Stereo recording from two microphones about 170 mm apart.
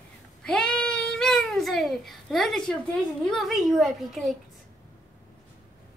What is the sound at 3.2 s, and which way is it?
A woman's voice, centre (ahead or behind).